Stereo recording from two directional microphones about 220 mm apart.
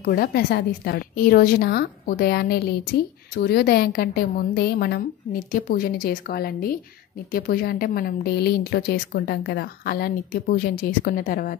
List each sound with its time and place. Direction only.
0.0 s a woman's voice: 45° left (ahead or behind)